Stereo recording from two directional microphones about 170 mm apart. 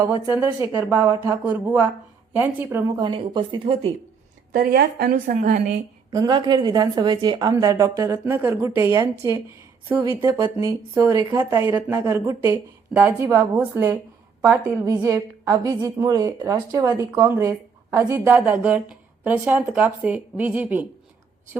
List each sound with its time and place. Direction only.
0.0 s a woman's voice: 10° right (ahead or behind)
0.9 s a woman's voice: 20° right (ahead or behind)
3.0 s a woman's voice: 25° right (ahead or behind)
4.5 s a woman's voice: 65° right (ahead or behind)
6.1 s a woman's voice: 25° right (ahead or behind)